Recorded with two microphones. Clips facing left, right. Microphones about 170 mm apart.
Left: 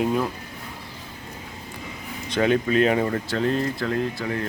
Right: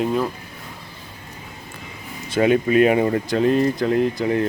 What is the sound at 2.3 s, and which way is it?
Speech, 10° right (ahead or behind).